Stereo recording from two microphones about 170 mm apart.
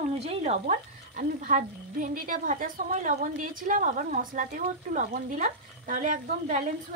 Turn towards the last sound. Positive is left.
turn(degrees=-45)  # may be behind; listen again after turning